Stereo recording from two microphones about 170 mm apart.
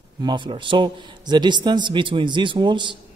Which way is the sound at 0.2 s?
25° right (ahead or behind).